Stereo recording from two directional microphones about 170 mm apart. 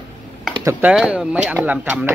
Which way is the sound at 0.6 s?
15° right (ahead or behind).